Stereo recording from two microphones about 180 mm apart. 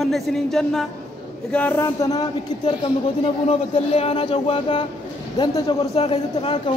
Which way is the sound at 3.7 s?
35° left (ahead or behind).